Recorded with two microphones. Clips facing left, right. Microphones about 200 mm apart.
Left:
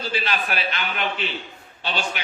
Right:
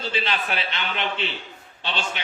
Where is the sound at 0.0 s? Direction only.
25° right (ahead or behind).